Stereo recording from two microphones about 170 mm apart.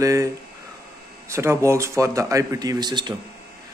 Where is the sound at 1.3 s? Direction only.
15° right (ahead or behind).